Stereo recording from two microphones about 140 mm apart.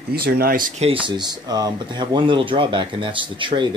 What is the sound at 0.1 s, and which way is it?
Speech, 90° right.